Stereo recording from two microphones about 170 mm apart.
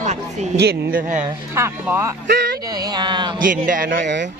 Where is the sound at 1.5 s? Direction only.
15° right (ahead or behind).